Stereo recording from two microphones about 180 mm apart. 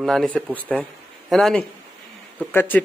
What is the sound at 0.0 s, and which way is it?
A man's voice, centre (ahead or behind).